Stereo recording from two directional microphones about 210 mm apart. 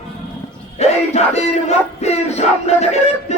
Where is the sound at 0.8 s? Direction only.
30° left (ahead or behind).